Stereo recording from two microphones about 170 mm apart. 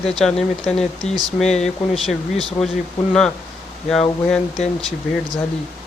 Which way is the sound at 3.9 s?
5° left (ahead or behind).